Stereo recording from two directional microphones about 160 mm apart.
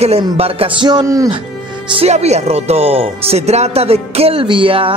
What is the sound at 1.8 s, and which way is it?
A man's voice, 40° right (ahead or behind).